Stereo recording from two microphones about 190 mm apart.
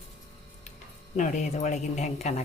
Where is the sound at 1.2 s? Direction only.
40° left (ahead or behind).